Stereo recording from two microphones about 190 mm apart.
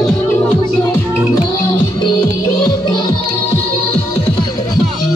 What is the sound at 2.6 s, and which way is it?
Music, 20° left (ahead or behind).